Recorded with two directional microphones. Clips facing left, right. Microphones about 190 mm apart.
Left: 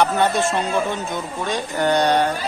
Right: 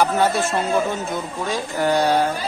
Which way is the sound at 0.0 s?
5° right (ahead or behind).